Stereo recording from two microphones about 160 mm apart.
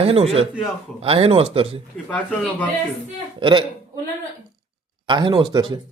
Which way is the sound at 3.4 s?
30° right (ahead or behind).